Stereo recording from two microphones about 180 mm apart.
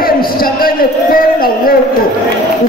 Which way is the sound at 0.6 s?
55° left (ahead or behind).